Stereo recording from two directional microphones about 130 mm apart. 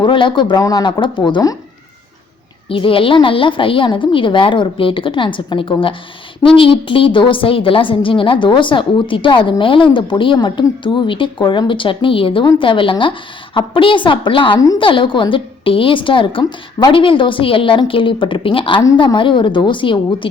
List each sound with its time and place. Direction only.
0.0 s a woman's voice: 40° left (ahead or behind)
2.6 s a woman's voice: 45° left (ahead or behind)